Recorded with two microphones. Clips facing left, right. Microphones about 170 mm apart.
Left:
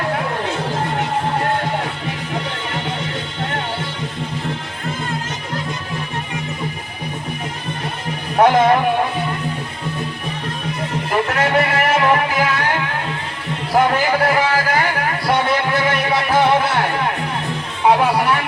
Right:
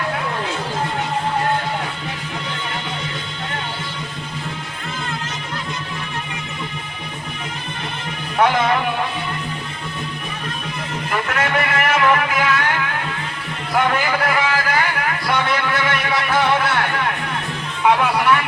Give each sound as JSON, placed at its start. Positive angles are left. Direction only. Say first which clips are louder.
{"t": 8.4, "sound": "music", "louder": "left 4 dB", "side_deg": 40}
{"t": 11.1, "sound": "a sound", "louder": "left 4 dB", "side_deg": 35}
{"t": 17.8, "sound": "music", "louder": "left 1 dB", "side_deg": 35}